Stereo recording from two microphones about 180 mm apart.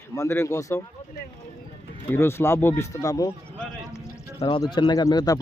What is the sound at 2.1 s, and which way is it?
A man's voice, 15° left (ahead or behind).